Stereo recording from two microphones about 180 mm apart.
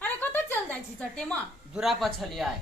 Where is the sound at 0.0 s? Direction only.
10° left (ahead or behind).